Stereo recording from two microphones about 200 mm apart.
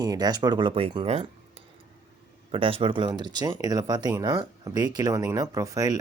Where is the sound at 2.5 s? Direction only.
25° right (ahead or behind).